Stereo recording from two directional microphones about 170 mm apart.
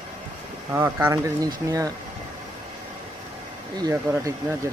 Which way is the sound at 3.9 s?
10° right (ahead or behind).